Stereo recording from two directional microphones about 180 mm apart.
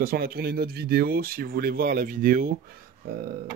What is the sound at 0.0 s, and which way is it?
Speech, 55° right (ahead or behind).